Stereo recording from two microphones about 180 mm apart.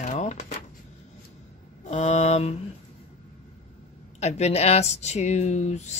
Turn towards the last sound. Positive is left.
turn(degrees=40)  # may be behind; listen again after turning